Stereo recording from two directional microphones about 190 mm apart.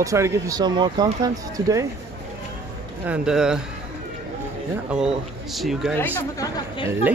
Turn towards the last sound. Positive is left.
turn(degrees=20)  # may be behind; listen again after turning